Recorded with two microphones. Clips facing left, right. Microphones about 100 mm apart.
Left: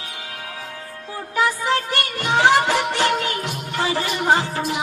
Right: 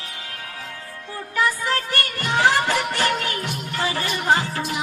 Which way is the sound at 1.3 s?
20° left (ahead or behind).